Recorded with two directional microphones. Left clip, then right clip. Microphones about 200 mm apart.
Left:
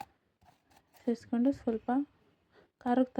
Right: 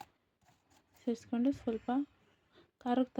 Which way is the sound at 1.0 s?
5° left (ahead or behind).